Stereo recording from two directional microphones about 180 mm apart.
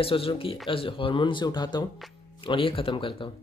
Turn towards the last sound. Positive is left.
turn(degrees=30)  # may be behind; listen again after turning